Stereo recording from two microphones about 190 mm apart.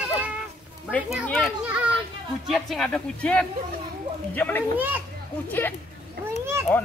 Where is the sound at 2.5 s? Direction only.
Centre (ahead or behind).